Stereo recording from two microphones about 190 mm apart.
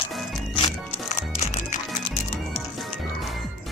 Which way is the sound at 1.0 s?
35° left (ahead or behind).